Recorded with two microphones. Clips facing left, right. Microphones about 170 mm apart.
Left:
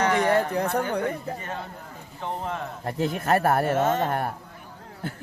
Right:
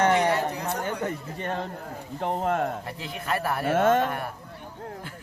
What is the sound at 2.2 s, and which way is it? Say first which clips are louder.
Speech: right 5 dB; 50° right (ahead or behind).